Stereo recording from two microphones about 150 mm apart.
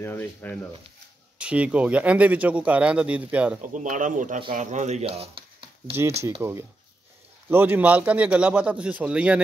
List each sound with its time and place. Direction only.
0.0 s speech: 15° left (ahead or behind)
1.4 s speech: 10° right (ahead or behind)
3.7 s speech: 60° right (ahead or behind); by 5.9 s 40° right (ahead or behind)
6.4 s speech: 15° right (ahead or behind)